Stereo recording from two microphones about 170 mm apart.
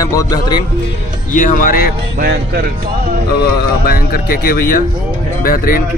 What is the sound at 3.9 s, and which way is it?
Speech, 60° left (ahead or behind).